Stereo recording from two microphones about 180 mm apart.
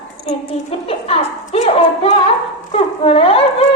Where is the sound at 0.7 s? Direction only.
35° left (ahead or behind).